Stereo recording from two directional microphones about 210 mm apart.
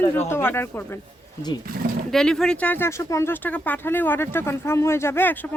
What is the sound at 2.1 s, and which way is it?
Speech, centre (ahead or behind).